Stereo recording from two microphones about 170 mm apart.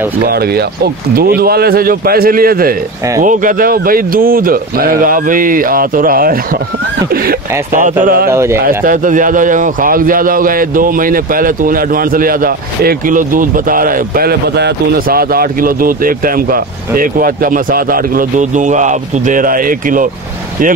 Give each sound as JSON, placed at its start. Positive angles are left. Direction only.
{"t": 0.2, "sound": "a man's voice", "side_deg": -65}
{"t": 8.3, "sound": "speech", "side_deg": -15}
{"t": 8.6, "sound": "a man's voice", "side_deg": -55}